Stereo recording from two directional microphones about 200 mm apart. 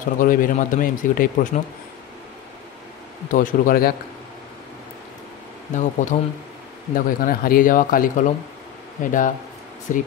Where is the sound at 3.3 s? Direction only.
45° left (ahead or behind).